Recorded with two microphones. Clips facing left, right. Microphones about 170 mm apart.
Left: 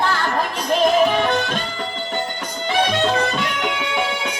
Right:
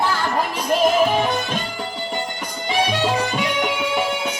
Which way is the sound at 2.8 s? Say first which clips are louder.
Left 2 dB; 10° right (ahead or behind).